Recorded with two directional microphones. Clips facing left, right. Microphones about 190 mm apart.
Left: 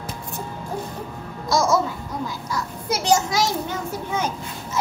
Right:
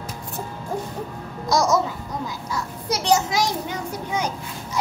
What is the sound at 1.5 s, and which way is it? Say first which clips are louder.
Speech: even; 20° right (ahead or behind).